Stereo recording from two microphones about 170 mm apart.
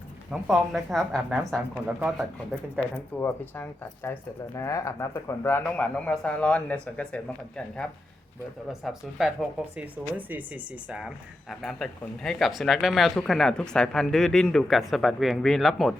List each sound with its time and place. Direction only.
0.3 s speech: centre (ahead or behind)
2.7 s speech: 10° left (ahead or behind)